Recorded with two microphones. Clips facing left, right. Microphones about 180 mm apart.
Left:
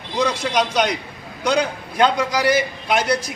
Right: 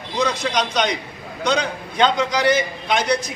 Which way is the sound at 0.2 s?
10° left (ahead or behind).